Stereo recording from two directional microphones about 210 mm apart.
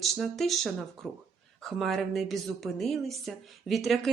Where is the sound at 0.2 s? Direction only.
Centre (ahead or behind).